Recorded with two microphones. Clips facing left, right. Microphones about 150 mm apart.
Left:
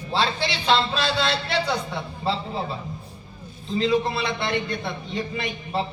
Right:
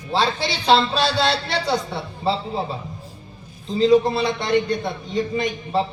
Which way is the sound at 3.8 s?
40° right (ahead or behind).